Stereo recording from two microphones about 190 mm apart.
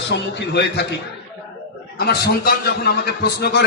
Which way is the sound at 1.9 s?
55° left (ahead or behind).